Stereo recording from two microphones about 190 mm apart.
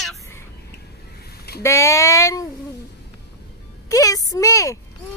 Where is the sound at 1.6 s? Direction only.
15° left (ahead or behind).